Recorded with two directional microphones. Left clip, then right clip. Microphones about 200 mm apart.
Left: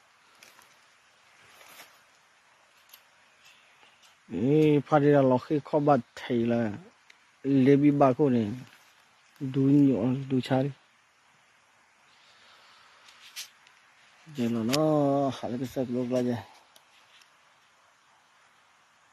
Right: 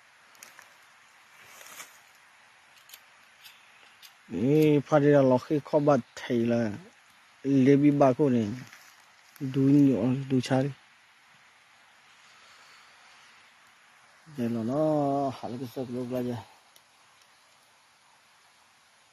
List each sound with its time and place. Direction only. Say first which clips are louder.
4.3 s speech: even; centre (ahead or behind)
9.5 s speech: right 1 dB; centre (ahead or behind)
14.3 s speech: left 2 dB; 30° left (ahead or behind); by 16.4 s 55° left (ahead or behind)